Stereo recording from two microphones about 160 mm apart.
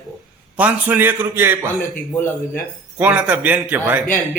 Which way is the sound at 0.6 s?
10° right (ahead or behind).